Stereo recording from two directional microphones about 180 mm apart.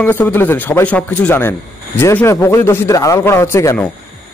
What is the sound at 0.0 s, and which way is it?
A man's voice, 10° left (ahead or behind).